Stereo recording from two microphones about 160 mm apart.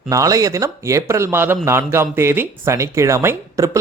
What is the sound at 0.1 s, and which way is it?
Speech, 20° right (ahead or behind).